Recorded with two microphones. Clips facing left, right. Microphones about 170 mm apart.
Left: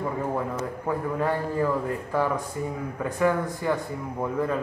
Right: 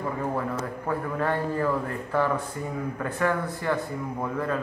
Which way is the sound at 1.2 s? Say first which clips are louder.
Even; 15° left (ahead or behind).